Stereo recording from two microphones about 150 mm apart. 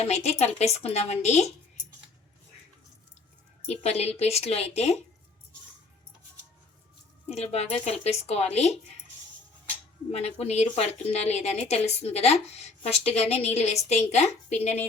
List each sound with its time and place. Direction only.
0.0 s a woman's voice: 45° left (ahead or behind)
3.7 s a woman's voice: 45° left (ahead or behind)
7.3 s a woman's voice: 45° left (ahead or behind)
10.1 s a woman's voice: 45° left (ahead or behind)